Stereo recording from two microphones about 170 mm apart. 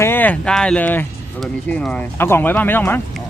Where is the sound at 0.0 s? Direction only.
10° left (ahead or behind).